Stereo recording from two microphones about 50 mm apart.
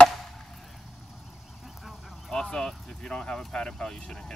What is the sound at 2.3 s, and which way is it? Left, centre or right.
Speech, centre.